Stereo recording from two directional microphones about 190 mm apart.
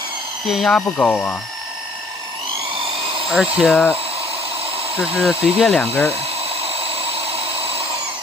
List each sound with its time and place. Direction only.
0.5 s speech: centre (ahead or behind)
3.5 s speech: 5° right (ahead or behind)
4.9 s speech: 5° right (ahead or behind)
5.6 s speech: 10° left (ahead or behind)
6.6 s a sound: 30° right (ahead or behind)